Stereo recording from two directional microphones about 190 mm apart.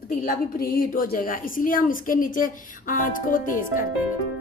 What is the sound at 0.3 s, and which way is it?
A woman's voice, 50° left (ahead or behind).